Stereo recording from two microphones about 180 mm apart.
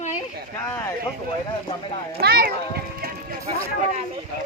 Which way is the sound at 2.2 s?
60° right (ahead or behind).